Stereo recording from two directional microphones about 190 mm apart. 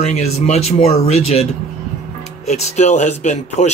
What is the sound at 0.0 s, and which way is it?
Speech, 35° left (ahead or behind).